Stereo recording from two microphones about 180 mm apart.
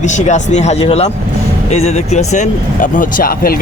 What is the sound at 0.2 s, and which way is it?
Speech, 40° left (ahead or behind).